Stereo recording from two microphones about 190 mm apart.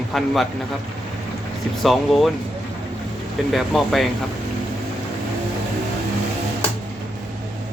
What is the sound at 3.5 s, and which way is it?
Speech, centre (ahead or behind).